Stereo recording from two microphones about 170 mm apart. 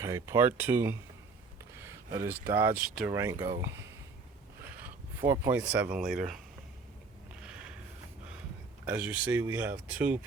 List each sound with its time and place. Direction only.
0.0 s speech: 15° right (ahead or behind)
3.1 s speech: 15° right (ahead or behind)
4.6 s speech: 10° right (ahead or behind)
7.4 s a sound: 5° right (ahead or behind)
8.9 s speech: 5° right (ahead or behind)